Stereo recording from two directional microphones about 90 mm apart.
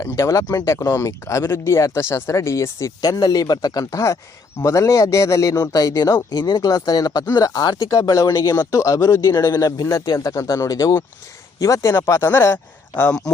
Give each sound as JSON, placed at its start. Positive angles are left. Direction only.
{"t": 0.3, "sound": "speech", "side_deg": 45}
{"t": 0.5, "sound": "speech", "side_deg": 30}
{"t": 13.0, "sound": "speech", "side_deg": 10}